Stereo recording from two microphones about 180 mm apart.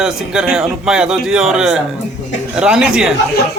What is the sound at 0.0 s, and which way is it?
Speech, 5° right (ahead or behind).